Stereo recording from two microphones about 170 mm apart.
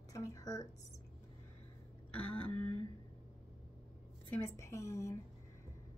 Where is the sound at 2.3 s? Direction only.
10° left (ahead or behind).